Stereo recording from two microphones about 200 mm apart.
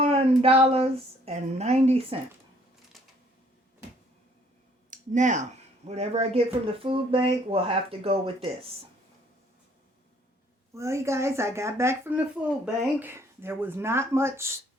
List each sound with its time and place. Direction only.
0.0 s speech: 30° right (ahead or behind)
2.9 s a sound: centre (ahead or behind)
4.9 s speech: 40° right (ahead or behind)
10.8 s speech: 15° right (ahead or behind)